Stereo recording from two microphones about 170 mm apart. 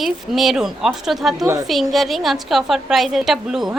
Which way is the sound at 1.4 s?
20° right (ahead or behind).